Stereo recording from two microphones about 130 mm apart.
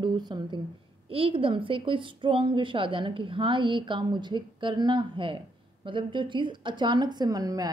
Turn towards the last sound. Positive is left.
turn(degrees=-30)  # may be behind; listen again after turning